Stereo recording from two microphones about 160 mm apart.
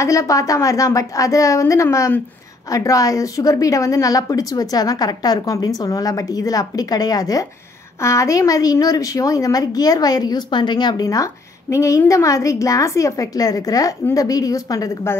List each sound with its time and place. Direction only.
0.0 s a woman's voice: 20° left (ahead or behind)